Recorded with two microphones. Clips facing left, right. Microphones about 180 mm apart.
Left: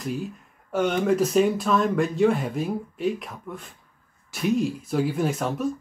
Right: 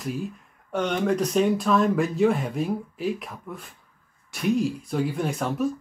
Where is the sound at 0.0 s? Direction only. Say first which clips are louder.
Left 1 dB; centre (ahead or behind).